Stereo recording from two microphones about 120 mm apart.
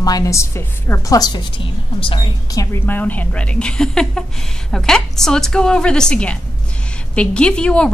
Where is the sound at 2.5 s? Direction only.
25° left (ahead or behind).